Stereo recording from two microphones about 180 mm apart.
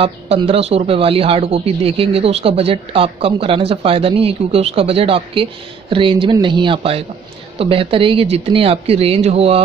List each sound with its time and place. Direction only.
0.0 s speech: 35° right (ahead or behind)